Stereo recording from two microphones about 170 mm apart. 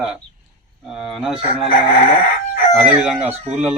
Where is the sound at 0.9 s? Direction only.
5° right (ahead or behind).